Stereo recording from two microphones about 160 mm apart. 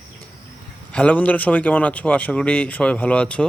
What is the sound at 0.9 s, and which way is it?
Speech, 10° left (ahead or behind).